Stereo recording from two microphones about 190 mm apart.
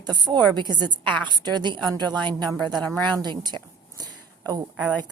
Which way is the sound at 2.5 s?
5° left (ahead or behind).